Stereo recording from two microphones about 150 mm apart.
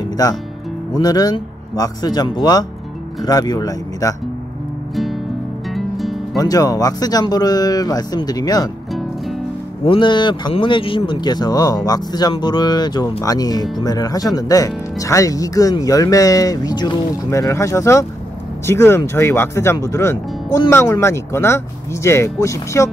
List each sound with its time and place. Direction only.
0.9 s speech: 25° left (ahead or behind)
5.8 s music: centre (ahead or behind)
6.3 s speech: 25° left (ahead or behind)
9.8 s speech: 30° left (ahead or behind)